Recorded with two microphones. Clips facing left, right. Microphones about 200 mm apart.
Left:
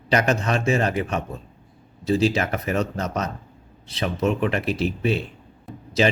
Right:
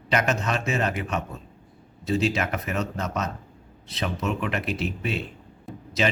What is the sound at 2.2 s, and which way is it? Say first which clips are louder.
Speech: left 4 dB; 30° left (ahead or behind).